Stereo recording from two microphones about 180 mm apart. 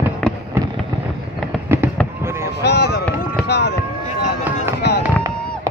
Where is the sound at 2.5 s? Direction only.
65° left (ahead or behind).